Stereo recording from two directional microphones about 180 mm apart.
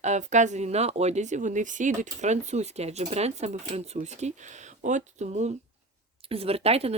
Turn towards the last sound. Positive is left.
turn(degrees=-35)  # may be behind; listen again after turning